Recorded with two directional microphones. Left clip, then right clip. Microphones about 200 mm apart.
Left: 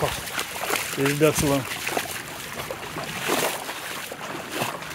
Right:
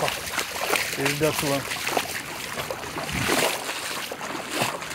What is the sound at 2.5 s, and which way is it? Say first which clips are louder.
Boat: right 2 dB; 45° right (ahead or behind).